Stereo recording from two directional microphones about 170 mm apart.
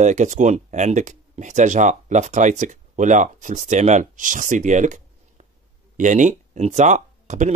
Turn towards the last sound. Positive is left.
turn(degrees=-45)  # may be behind; listen again after turning